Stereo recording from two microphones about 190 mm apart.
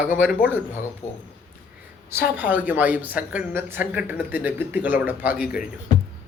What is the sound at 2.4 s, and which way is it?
A woman's voice, 10° right (ahead or behind).